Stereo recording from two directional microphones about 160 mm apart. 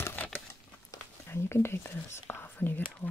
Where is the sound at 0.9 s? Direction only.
15° left (ahead or behind).